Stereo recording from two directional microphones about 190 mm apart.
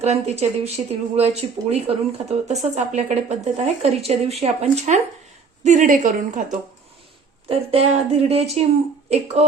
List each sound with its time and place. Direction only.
0.0 s a woman's voice: 35° right (ahead or behind)
7.4 s a woman's voice: 30° right (ahead or behind)